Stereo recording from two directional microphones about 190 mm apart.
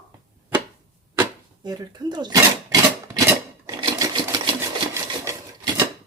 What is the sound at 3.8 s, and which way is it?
Typewriter, 20° right (ahead or behind).